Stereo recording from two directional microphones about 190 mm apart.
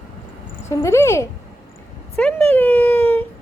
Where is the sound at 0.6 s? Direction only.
15° left (ahead or behind).